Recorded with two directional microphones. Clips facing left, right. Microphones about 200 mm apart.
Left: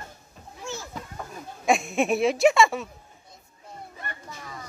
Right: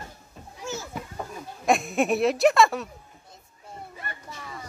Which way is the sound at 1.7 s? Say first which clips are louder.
Even; centre (ahead or behind).